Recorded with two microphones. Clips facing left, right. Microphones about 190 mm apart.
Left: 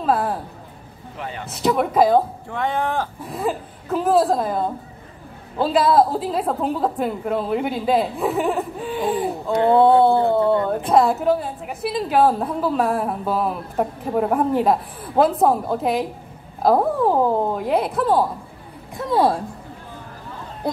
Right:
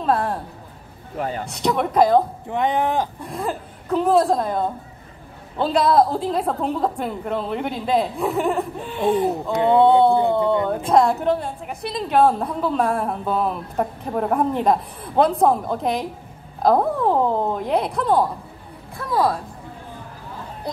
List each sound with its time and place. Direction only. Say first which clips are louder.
0.0 s speech: even; 5° left (ahead or behind)
1.1 s a man's voice: right 6 dB; 40° right (ahead or behind)
1.5 s a woman's voice: left 3 dB; centre (ahead or behind)
2.4 s speech: right 2 dB; 20° right (ahead or behind)
3.2 s a woman's voice: left 2 dB; centre (ahead or behind)
9.3 s speech: left 1 dB; 20° right (ahead or behind)
10.9 s a woman's voice: left 1 dB; centre (ahead or behind)
18.9 s speech: left 2 dB; 25° left (ahead or behind)
20.6 s speech: left 5 dB; 50° left (ahead or behind)